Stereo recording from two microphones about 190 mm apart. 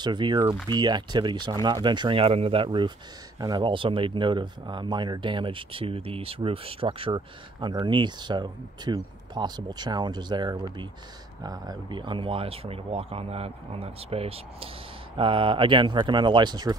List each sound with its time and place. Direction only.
0.0 s speech: 25° right (ahead or behind)